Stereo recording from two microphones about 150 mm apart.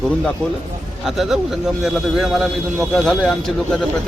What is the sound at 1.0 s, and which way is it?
A man's voice, centre (ahead or behind).